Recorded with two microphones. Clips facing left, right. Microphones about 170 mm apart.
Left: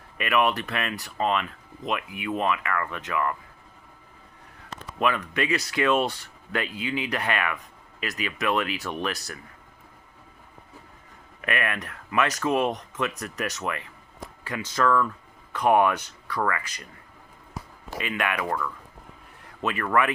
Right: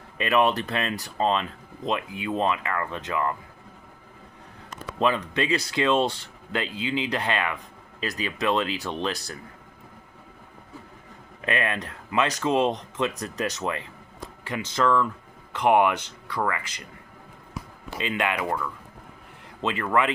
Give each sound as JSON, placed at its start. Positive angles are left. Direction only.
{"t": 0.2, "sound": "speech", "side_deg": -30}
{"t": 4.9, "sound": "speech", "side_deg": -30}
{"t": 11.4, "sound": "speech", "side_deg": -25}
{"t": 17.9, "sound": "speech", "side_deg": -25}
{"t": 18.4, "sound": "speech", "side_deg": -5}
{"t": 19.6, "sound": "speech", "side_deg": -20}